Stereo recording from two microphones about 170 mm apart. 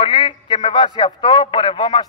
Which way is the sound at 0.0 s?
25° left (ahead or behind).